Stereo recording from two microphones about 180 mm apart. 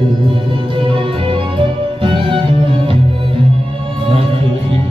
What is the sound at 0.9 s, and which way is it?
Music, 30° right (ahead or behind).